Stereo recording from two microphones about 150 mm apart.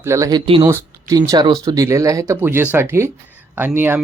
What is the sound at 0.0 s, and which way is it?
Speech, 20° right (ahead or behind).